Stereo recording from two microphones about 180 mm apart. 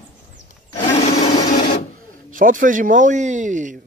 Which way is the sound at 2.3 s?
50° right (ahead or behind).